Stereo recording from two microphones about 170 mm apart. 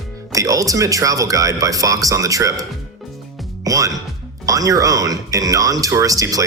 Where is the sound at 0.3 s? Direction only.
20° right (ahead or behind).